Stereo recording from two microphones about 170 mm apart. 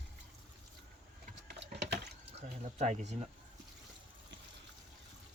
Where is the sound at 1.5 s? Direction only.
75° right (ahead or behind).